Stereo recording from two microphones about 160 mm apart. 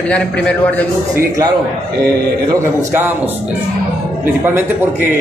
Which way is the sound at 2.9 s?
15° right (ahead or behind).